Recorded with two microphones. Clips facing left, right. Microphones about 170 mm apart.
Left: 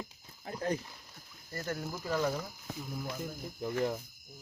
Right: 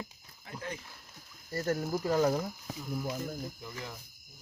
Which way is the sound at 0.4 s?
40° left (ahead or behind).